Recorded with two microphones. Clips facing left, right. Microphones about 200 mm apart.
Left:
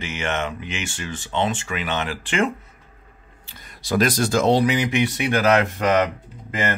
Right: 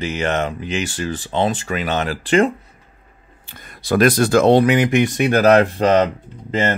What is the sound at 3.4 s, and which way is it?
Speech, 55° right (ahead or behind).